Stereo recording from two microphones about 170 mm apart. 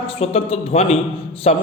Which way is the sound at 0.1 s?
35° left (ahead or behind).